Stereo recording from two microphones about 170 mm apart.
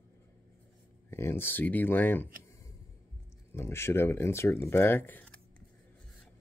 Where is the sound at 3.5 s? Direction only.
15° left (ahead or behind).